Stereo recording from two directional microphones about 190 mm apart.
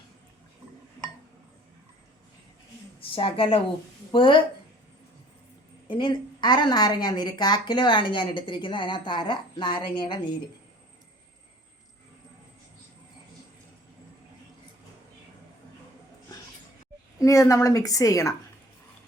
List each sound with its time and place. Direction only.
3.2 s a woman's voice: 30° left (ahead or behind)
5.9 s a woman's voice: 25° left (ahead or behind)
17.2 s a woman's voice: 15° left (ahead or behind)